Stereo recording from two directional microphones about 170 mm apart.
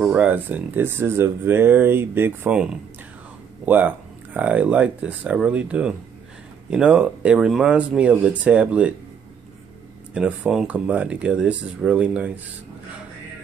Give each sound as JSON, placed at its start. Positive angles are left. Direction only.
{"t": 0.0, "sound": "speech", "side_deg": -5}
{"t": 10.1, "sound": "speech", "side_deg": -5}